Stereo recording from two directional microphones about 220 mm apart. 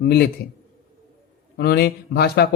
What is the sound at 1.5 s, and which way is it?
Speech, 45° left (ahead or behind).